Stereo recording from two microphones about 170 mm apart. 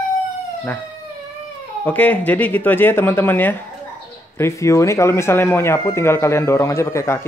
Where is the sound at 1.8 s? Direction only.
10° left (ahead or behind).